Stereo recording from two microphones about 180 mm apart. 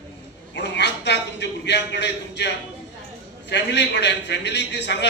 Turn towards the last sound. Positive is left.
turn(degrees=70)  # may be behind; listen again after turning